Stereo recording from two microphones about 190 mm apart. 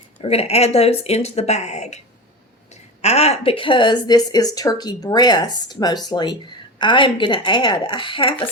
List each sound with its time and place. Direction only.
0.2 s speech: 30° left (ahead or behind)
3.0 s speech: 35° left (ahead or behind)